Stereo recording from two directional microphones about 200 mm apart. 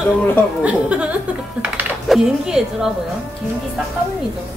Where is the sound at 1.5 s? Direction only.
10° right (ahead or behind).